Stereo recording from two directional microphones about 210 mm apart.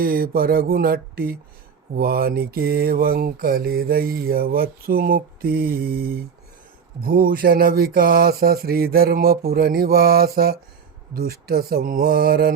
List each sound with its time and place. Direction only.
0.0 s mantra: 45° right (ahead or behind)